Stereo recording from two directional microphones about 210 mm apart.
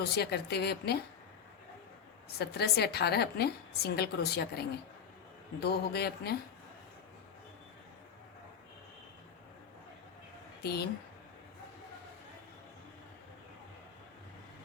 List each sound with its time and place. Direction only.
0.0 s a woman's voice: 50° left (ahead or behind)
2.4 s a woman's voice: 50° left (ahead or behind)
5.6 s a woman's voice: 50° left (ahead or behind)
10.6 s a woman's voice: 50° left (ahead or behind)